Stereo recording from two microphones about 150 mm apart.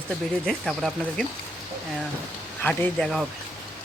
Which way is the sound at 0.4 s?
Centre (ahead or behind).